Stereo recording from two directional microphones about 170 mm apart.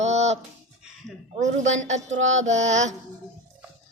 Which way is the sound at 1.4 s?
45° right (ahead or behind).